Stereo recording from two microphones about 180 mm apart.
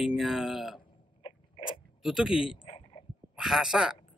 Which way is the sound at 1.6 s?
30° left (ahead or behind).